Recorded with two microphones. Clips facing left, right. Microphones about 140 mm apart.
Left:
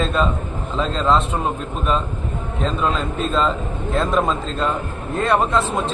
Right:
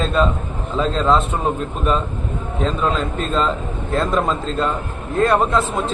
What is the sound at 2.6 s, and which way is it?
A man's voice, centre (ahead or behind).